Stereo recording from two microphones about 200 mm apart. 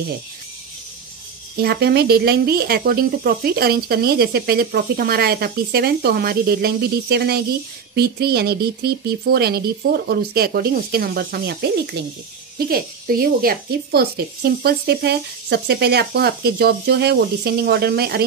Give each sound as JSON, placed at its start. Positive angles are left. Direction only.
{"t": 1.6, "sound": "speech", "side_deg": -55}